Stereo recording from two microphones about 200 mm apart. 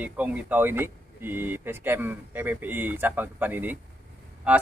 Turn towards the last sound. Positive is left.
turn(degrees=-5)  # may be behind; listen again after turning